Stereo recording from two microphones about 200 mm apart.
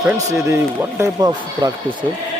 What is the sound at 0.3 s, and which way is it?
Speech, 15° right (ahead or behind).